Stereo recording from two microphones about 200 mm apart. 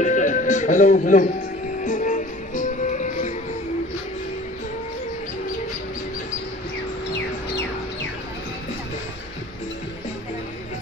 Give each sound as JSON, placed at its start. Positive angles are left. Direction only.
{"t": 0.0, "sound": "speech", "side_deg": 40}
{"t": 1.8, "sound": "music", "side_deg": 40}